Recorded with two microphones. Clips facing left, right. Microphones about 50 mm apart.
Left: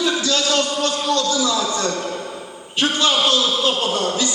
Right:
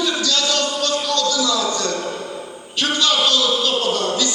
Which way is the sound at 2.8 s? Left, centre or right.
Left.